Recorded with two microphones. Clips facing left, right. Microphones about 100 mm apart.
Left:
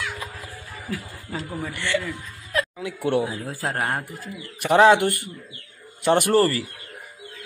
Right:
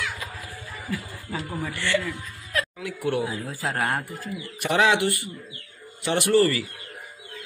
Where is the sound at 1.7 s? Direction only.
15° left (ahead or behind).